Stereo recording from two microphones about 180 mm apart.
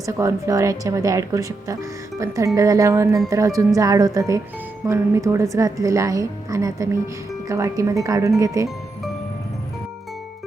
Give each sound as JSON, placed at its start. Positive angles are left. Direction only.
{"t": 0.0, "sound": "speech", "side_deg": -15}